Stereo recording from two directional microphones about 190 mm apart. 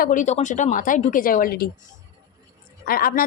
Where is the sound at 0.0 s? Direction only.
45° left (ahead or behind).